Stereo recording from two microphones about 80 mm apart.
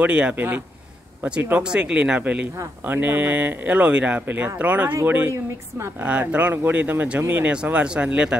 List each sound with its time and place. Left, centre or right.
0.0 s speech: centre
1.6 s speech: centre